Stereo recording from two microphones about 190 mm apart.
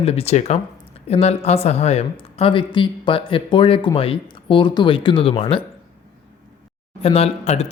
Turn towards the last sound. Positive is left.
turn(degrees=35)  # may be behind; listen again after turning